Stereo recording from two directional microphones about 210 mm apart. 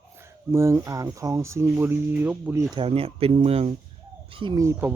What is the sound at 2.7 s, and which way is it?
Speech, 25° right (ahead or behind).